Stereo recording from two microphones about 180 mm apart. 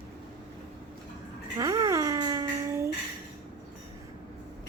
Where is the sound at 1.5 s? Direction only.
20° right (ahead or behind).